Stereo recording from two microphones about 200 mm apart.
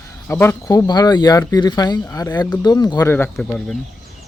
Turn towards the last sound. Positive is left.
turn(degrees=5)  # may be behind; listen again after turning